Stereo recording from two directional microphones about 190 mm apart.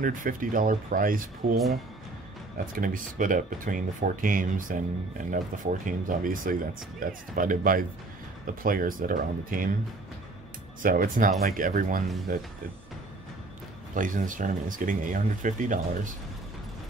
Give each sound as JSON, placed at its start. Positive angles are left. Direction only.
{"t": 0.0, "sound": "speech", "side_deg": -45}
{"t": 2.7, "sound": "speech", "side_deg": -45}
{"t": 10.8, "sound": "speech", "side_deg": -45}
{"t": 13.9, "sound": "speech", "side_deg": -45}